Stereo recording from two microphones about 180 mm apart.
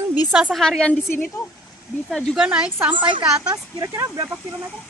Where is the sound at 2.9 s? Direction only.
25° right (ahead or behind).